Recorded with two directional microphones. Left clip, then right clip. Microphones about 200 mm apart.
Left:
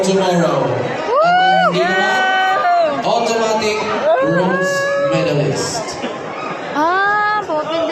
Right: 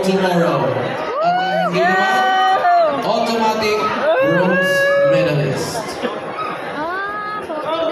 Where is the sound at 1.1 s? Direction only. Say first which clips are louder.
Left 6 dB; 40° left (ahead or behind).